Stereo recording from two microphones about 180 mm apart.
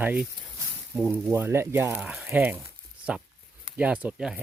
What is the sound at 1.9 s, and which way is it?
Speech, centre (ahead or behind).